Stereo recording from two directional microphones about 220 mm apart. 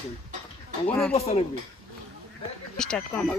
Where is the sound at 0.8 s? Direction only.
5° left (ahead or behind).